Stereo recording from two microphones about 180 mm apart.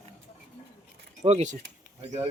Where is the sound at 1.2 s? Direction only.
40° right (ahead or behind).